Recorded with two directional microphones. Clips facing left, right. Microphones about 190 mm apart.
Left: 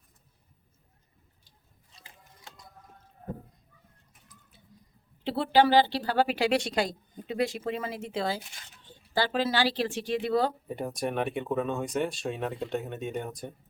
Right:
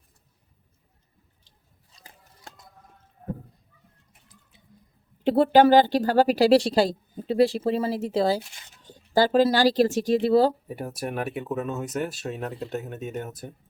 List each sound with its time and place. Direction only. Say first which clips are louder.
1.9 s a sound: right 2 dB; 40° right (ahead or behind)
5.2 s speech: right 6 dB; 45° right (ahead or behind)
10.7 s speech: even; 5° right (ahead or behind)